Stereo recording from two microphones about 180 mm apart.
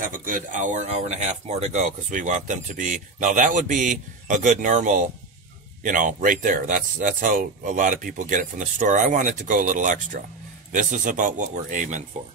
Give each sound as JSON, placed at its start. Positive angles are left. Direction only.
{"t": 0.0, "sound": "speech", "side_deg": -50}